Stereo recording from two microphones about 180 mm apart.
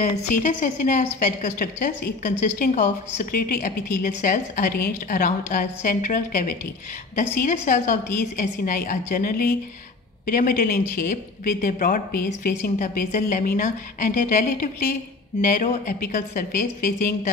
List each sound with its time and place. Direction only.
0.0 s a woman's voice: 45° left (ahead or behind)